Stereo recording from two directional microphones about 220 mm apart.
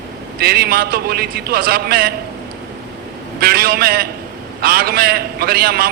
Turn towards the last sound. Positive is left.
turn(degrees=-45)  # may be behind; listen again after turning